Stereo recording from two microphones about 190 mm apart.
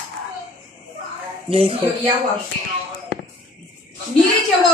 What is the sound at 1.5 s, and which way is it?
Speech, 30° right (ahead or behind).